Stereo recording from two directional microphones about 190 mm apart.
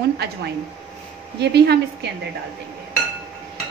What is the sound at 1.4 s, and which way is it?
Speech, 60° right (ahead or behind).